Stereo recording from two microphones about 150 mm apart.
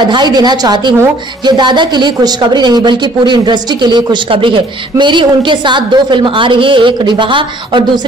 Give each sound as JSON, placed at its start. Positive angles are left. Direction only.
{"t": 0.1, "sound": "a woman's voice", "side_deg": -30}